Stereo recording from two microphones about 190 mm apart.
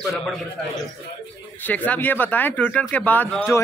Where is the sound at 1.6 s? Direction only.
10° left (ahead or behind).